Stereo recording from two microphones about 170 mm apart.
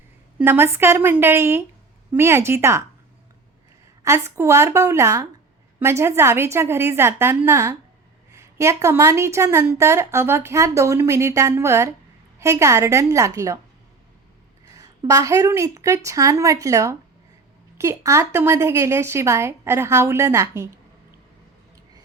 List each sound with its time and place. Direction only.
0.3 s a woman's voice: 10° right (ahead or behind)
4.0 s a woman's voice: 15° right (ahead or behind)
14.7 s a woman's voice: 20° right (ahead or behind)